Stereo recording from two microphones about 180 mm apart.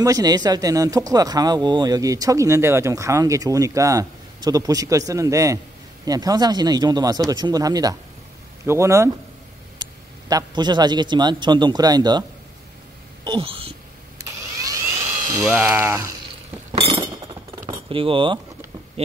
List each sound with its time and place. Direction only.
0.0 s a man's voice: 20° right (ahead or behind)
13.2 s a sound: 30° right (ahead or behind)
14.6 s dental drill: 15° right (ahead or behind)
15.4 s speech: 10° right (ahead or behind)
16.7 s chink: 30° right (ahead or behind)
17.8 s speech: 30° right (ahead or behind)